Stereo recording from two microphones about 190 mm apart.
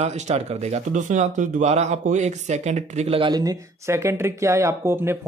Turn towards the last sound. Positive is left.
turn(degrees=-10)  # may be behind; listen again after turning